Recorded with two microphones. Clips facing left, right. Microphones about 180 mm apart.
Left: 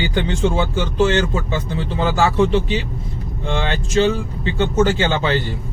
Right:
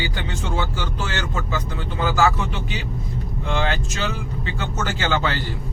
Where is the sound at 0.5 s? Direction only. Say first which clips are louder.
Left 7 dB; 25° left (ahead or behind).